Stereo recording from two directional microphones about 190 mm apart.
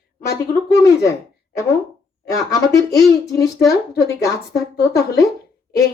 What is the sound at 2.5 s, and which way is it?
A woman's voice, 20° left (ahead or behind).